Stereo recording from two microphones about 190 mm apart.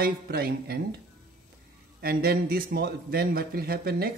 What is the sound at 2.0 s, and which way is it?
A man's voice, 50° right (ahead or behind).